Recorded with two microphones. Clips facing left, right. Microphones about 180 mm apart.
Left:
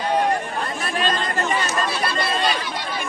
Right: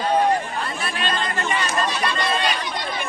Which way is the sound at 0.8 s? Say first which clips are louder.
Left 3 dB; 40° left (ahead or behind).